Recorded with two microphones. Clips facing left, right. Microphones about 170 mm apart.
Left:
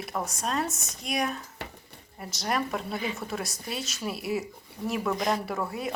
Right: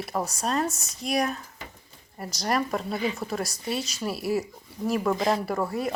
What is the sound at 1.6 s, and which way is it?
Dishes, 70° left (ahead or behind).